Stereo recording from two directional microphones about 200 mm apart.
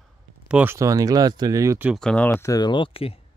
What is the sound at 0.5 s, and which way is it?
Speech, 10° right (ahead or behind).